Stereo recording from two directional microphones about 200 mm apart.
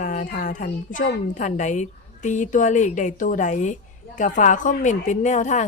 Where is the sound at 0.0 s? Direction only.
40° left (ahead or behind).